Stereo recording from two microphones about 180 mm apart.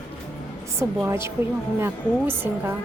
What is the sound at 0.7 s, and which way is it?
Speech, 15° right (ahead or behind).